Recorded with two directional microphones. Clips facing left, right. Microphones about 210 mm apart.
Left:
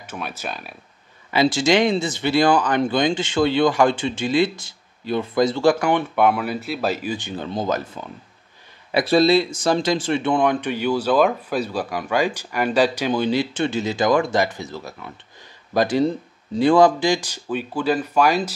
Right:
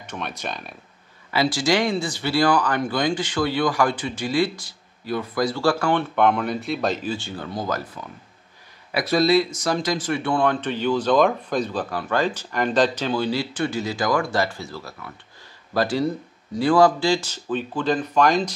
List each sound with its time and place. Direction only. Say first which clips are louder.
0.0 s speech: even; 5° left (ahead or behind)
1.3 s speech: left 3 dB; 25° left (ahead or behind)